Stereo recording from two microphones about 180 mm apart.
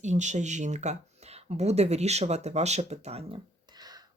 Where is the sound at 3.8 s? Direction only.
20° right (ahead or behind).